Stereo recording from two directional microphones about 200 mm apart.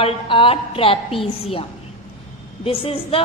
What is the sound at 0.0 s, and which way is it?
A woman's voice, 25° left (ahead or behind).